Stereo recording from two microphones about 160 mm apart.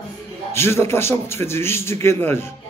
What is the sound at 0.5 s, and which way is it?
A man's voice, 15° left (ahead or behind).